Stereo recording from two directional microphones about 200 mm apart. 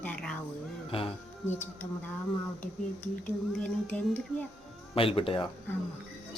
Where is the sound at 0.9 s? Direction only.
25° left (ahead or behind).